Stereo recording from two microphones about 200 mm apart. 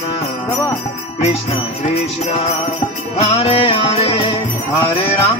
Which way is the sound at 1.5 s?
30° left (ahead or behind).